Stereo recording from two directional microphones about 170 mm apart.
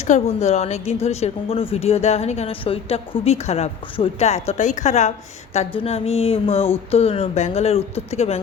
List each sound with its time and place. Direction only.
0.0 s speech: 40° left (ahead or behind)